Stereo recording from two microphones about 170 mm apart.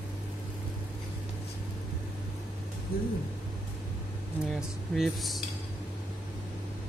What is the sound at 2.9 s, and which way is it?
Speech, 60° left (ahead or behind).